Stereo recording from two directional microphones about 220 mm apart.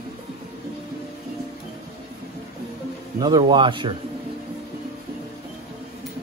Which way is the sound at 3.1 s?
20° right (ahead or behind).